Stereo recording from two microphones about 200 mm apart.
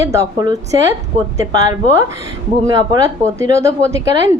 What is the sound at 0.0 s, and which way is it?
Speech, 15° right (ahead or behind).